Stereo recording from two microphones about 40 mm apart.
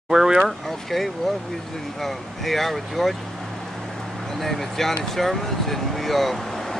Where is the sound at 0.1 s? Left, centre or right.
Centre.